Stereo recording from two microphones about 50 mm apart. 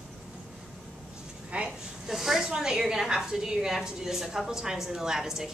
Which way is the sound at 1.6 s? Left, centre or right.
Centre.